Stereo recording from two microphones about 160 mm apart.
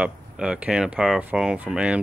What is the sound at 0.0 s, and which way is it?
Speech, 5° right (ahead or behind).